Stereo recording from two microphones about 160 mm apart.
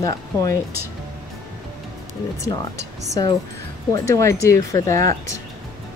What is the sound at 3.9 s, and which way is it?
Speech, 20° left (ahead or behind).